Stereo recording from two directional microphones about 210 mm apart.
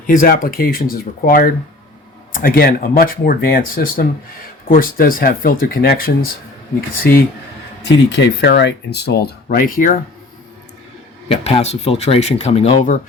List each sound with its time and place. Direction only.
0.1 s speech: 40° left (ahead or behind)
7.8 s speech: 60° left (ahead or behind); by 10.0 s 40° left (ahead or behind)
11.3 s speech: 30° left (ahead or behind)